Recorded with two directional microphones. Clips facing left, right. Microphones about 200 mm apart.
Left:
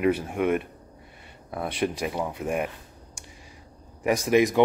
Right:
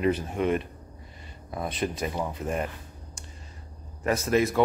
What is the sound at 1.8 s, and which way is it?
Speech, 10° left (ahead or behind).